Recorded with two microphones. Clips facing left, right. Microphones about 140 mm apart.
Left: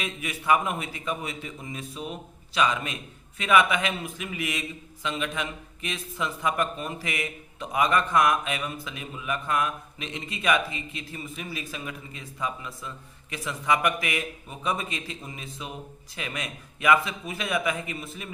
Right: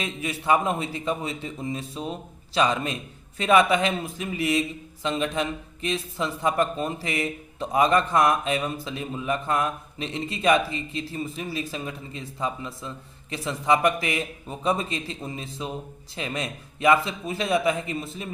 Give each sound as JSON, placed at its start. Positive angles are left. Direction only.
{"t": 0.0, "sound": "a man's voice", "side_deg": -30}